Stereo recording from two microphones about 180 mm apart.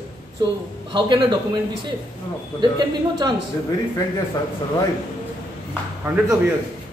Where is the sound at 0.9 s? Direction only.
25° right (ahead or behind).